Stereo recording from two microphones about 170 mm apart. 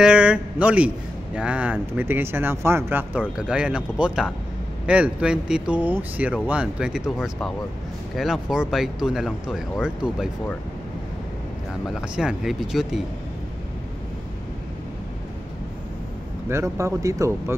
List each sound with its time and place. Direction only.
0.0 s a man's voice: 5° right (ahead or behind)
11.9 s speech: 5° right (ahead or behind)
16.4 s a man's voice: 15° right (ahead or behind)